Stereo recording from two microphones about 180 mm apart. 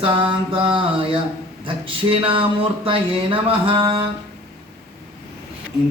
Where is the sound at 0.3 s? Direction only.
30° right (ahead or behind).